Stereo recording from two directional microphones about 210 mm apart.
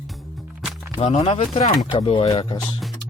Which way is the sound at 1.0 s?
25° left (ahead or behind).